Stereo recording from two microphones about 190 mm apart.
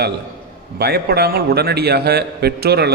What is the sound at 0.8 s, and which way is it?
A man's voice, 55° right (ahead or behind).